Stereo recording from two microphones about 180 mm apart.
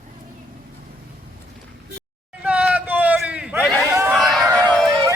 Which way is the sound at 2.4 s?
10° right (ahead or behind).